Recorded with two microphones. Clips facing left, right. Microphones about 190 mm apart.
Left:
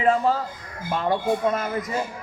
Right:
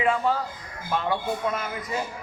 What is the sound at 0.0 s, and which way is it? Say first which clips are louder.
Speech: left 3 dB; 40° left (ahead or behind).